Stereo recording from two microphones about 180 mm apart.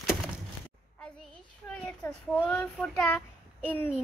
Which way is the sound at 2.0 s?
10° left (ahead or behind).